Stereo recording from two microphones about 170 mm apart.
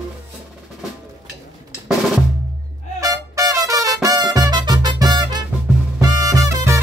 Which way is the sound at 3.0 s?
20° right (ahead or behind).